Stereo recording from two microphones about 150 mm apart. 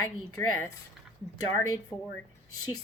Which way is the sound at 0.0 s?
20° left (ahead or behind).